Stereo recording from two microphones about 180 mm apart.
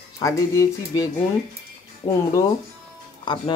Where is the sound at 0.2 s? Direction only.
20° left (ahead or behind).